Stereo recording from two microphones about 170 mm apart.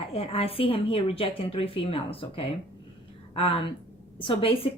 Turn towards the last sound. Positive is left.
turn(degrees=30)  # may be behind; listen again after turning